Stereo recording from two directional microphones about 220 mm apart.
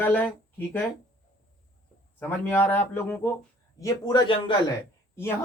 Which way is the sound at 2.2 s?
10° left (ahead or behind).